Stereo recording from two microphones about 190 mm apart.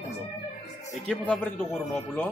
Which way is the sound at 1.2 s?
5° left (ahead or behind).